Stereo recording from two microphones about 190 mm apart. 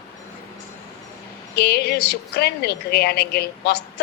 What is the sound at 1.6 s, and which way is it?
A woman's voice, 55° left (ahead or behind).